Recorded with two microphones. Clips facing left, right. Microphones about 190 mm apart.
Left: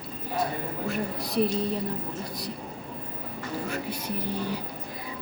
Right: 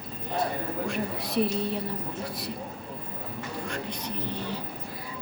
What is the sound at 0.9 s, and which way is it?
Speech, centre (ahead or behind).